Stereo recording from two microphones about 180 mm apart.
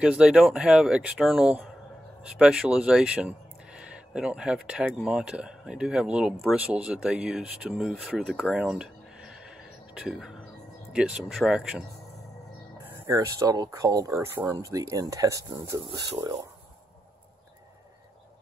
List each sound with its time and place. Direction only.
0.0 s speech: 5° right (ahead or behind)
12.8 s speech: 15° right (ahead or behind)